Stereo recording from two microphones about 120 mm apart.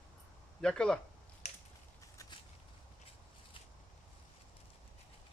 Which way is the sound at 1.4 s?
70° left (ahead or behind).